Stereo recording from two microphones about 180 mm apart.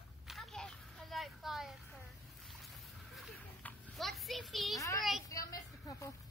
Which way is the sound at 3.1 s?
5° left (ahead or behind).